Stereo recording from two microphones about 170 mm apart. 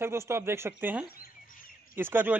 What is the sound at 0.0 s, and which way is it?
Speech, 15° right (ahead or behind).